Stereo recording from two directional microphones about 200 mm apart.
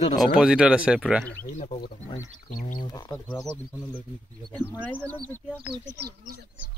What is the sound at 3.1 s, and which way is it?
Speech, 5° left (ahead or behind).